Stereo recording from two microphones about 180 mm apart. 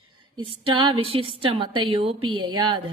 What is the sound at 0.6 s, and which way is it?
A woman's voice, 30° right (ahead or behind).